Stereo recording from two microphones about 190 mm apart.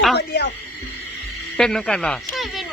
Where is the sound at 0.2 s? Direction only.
60° left (ahead or behind).